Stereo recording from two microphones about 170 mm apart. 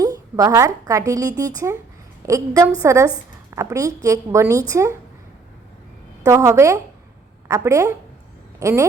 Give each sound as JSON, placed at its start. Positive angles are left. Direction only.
{"t": 0.0, "sound": "a woman's voice", "side_deg": -20}
{"t": 6.2, "sound": "a woman's voice", "side_deg": -15}